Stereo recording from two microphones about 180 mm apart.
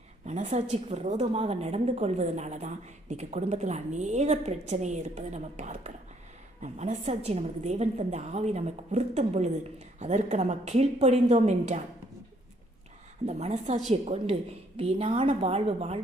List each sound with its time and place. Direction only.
0.3 s a woman's voice: 40° right (ahead or behind)
13.2 s a woman's voice: 40° right (ahead or behind)